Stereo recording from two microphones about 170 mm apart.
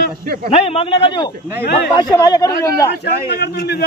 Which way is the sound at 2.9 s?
75° left (ahead or behind).